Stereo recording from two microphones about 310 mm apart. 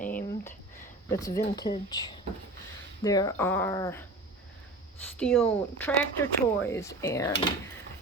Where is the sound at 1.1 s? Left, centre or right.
Centre.